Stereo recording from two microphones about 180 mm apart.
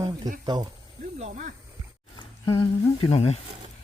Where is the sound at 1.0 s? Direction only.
40° right (ahead or behind).